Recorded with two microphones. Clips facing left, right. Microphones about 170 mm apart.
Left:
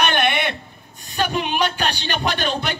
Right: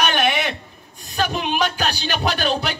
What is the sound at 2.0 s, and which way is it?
Speech, 5° right (ahead or behind).